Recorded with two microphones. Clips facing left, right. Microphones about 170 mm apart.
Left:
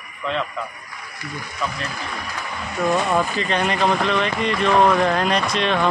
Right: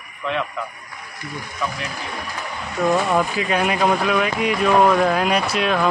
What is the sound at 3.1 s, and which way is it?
Speech, 5° right (ahead or behind).